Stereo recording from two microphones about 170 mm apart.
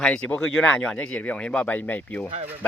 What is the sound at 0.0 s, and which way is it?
Speech, 5° left (ahead or behind).